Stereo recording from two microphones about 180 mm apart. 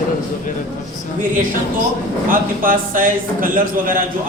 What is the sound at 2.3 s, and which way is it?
A man's voice, 50° right (ahead or behind).